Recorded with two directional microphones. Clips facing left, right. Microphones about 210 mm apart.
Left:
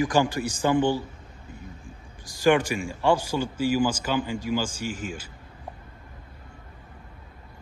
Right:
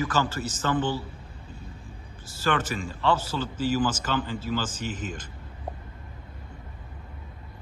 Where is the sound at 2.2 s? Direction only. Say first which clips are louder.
Left 7 dB; 15° left (ahead or behind).